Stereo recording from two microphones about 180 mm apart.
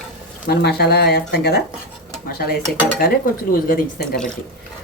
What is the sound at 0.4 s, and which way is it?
Speech, 60° left (ahead or behind).